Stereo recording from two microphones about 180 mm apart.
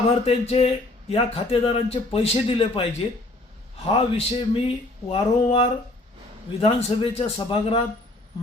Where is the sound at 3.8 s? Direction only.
30° left (ahead or behind).